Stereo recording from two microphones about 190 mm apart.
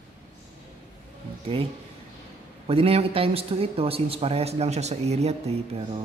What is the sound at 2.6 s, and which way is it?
A man's voice, 30° right (ahead or behind).